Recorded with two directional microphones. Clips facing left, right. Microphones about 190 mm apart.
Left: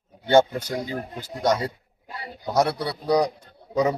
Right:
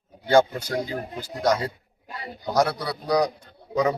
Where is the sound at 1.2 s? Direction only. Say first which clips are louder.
Even; 25° left (ahead or behind).